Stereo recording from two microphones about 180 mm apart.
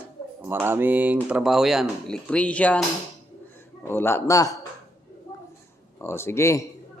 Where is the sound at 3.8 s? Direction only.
15° left (ahead or behind).